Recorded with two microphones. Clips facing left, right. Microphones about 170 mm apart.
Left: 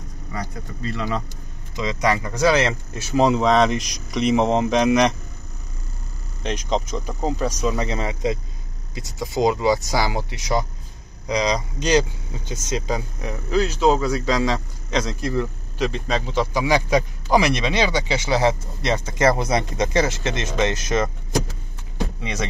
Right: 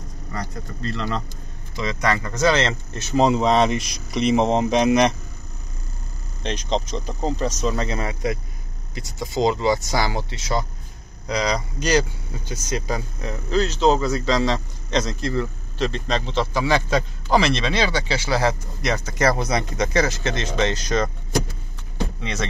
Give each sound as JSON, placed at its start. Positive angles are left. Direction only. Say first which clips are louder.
{"t": 0.3, "sound": "speech", "louder": "even", "side_deg": 10}
{"t": 3.3, "sound": "speech", "louder": "left 1 dB", "side_deg": 0}
{"t": 6.4, "sound": "speech", "louder": "left 1 dB", "side_deg": 5}
{"t": 22.2, "sound": "music", "louder": "left 1 dB", "side_deg": 15}